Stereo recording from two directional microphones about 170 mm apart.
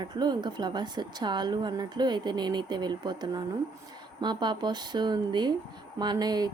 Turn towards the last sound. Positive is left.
turn(degrees=-25)  # may be behind; listen again after turning